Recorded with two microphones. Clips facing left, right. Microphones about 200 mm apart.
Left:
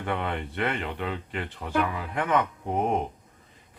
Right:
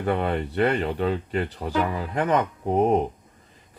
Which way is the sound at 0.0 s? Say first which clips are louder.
Right 6 dB; 35° right (ahead or behind).